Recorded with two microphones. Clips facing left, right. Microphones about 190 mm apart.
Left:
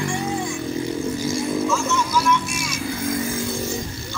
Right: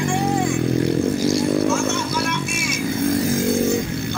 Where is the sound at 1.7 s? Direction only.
60° right (ahead or behind).